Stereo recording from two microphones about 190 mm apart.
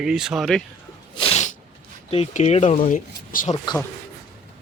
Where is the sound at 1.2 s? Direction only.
30° left (ahead or behind).